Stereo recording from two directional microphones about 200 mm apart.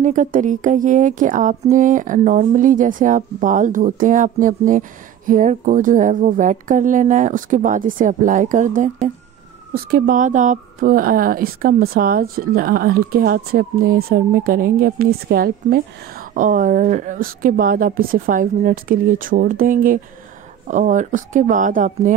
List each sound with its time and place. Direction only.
0.0 s speech: 40° right (ahead or behind)